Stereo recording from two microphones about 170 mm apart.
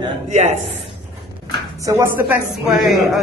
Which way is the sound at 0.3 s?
45° right (ahead or behind).